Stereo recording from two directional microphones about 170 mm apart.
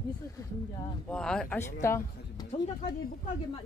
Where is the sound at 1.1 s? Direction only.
5° left (ahead or behind).